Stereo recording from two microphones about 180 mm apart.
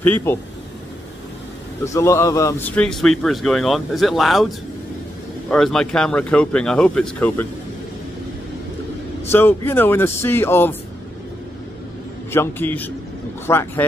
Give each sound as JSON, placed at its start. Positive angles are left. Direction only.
{"t": 0.0, "sound": "speech", "side_deg": 10}
{"t": 2.0, "sound": "speech", "side_deg": 15}
{"t": 9.3, "sound": "speech", "side_deg": 10}
{"t": 12.3, "sound": "speech", "side_deg": 10}